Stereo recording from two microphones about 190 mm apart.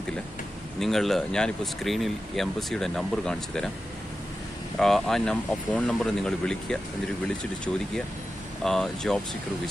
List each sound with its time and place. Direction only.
0.7 s speech: centre (ahead or behind)
4.7 s speech: centre (ahead or behind)
8.6 s speech: centre (ahead or behind)